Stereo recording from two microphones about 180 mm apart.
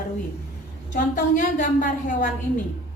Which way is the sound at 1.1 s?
45° left (ahead or behind).